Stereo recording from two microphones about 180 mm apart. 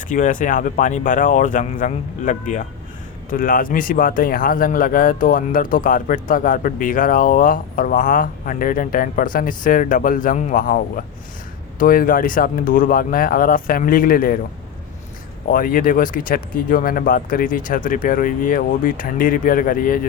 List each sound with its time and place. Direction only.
0.1 s speech: 45° left (ahead or behind)
15.4 s speech: 50° left (ahead or behind)